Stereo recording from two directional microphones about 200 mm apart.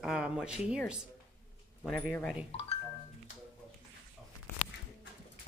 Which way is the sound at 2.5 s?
30° left (ahead or behind).